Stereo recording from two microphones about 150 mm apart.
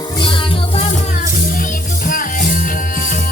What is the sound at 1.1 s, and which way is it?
Music, 65° left (ahead or behind).